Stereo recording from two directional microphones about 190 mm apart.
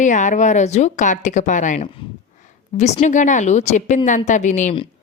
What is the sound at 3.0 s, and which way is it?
Speech, 40° left (ahead or behind).